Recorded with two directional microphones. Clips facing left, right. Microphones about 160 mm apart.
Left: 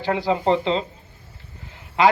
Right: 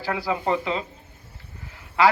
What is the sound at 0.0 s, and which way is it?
Speech, 25° left (ahead or behind).